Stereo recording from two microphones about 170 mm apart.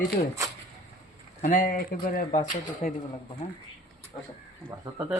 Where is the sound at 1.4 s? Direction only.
55° left (ahead or behind).